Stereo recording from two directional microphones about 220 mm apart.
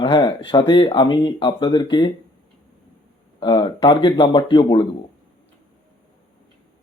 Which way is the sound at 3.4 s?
20° left (ahead or behind).